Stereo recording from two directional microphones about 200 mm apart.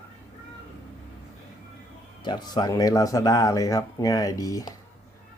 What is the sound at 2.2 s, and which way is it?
Speech, 20° left (ahead or behind).